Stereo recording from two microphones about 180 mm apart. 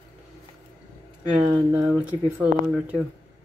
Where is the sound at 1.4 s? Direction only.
5° right (ahead or behind).